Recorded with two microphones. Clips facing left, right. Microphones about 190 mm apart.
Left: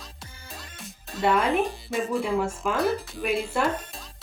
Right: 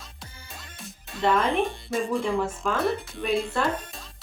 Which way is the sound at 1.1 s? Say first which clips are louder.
Even; 10° left (ahead or behind).